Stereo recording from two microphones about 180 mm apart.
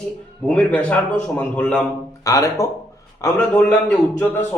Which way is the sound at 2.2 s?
20° left (ahead or behind).